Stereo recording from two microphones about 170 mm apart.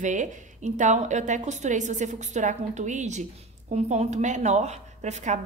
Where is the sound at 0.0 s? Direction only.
45° right (ahead or behind).